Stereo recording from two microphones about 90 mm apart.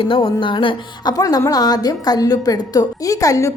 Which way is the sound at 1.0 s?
45° left (ahead or behind).